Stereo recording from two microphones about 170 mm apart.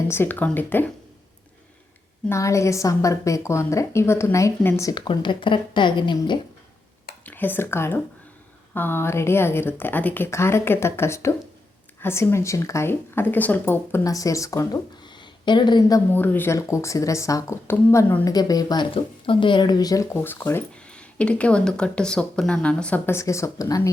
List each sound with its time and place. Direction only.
0.1 s speech: 10° left (ahead or behind)
2.3 s a woman's voice: 15° left (ahead or behind)
7.3 s speech: 10° left (ahead or behind)
16.1 s speech: 10° left (ahead or behind)